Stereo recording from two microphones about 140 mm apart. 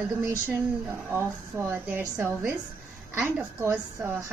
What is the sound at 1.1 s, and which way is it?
A woman's voice, 15° right (ahead or behind).